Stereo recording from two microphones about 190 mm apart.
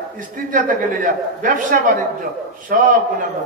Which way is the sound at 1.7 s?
50° right (ahead or behind).